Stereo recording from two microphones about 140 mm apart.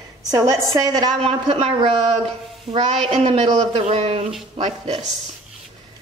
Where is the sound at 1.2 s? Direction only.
45° right (ahead or behind).